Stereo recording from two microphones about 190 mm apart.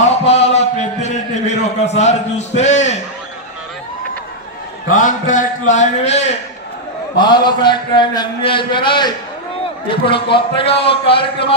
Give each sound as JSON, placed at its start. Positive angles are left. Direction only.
{"t": 0.0, "sound": "a sound", "side_deg": 35}
{"t": 2.6, "sound": "a man's voice", "side_deg": 35}
{"t": 4.9, "sound": "a man's voice", "side_deg": 45}
{"t": 7.2, "sound": "a man's voice", "side_deg": 25}